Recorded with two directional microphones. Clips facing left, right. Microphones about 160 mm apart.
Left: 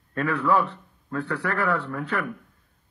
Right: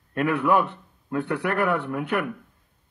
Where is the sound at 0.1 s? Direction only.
15° right (ahead or behind).